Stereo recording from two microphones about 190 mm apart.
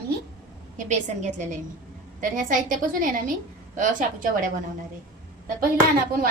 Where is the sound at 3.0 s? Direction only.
45° right (ahead or behind).